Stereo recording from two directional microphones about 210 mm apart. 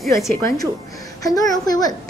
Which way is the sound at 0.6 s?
15° left (ahead or behind).